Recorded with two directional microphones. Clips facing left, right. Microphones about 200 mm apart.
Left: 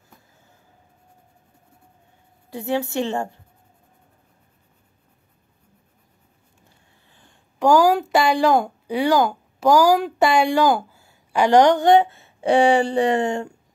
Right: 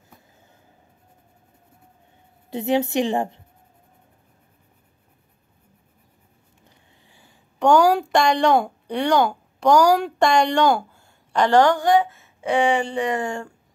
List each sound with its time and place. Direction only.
2.5 s a woman's voice: 20° right (ahead or behind)
7.1 s speech: 5° right (ahead or behind); by 13.5 s 20° left (ahead or behind)